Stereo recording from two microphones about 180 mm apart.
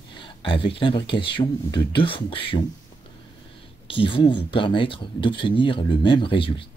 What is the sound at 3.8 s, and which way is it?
Speech, 30° left (ahead or behind).